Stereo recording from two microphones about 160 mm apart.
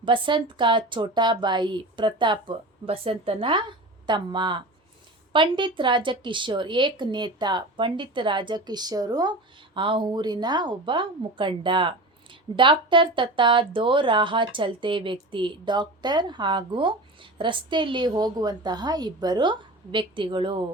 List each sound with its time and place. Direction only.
0.0 s speech: 30° right (ahead or behind)